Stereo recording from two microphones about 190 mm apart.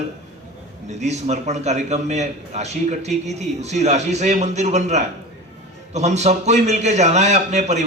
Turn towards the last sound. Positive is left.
turn(degrees=-35)  # may be behind; listen again after turning